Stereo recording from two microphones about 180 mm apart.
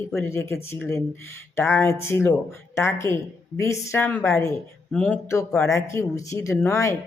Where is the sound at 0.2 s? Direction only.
15° left (ahead or behind).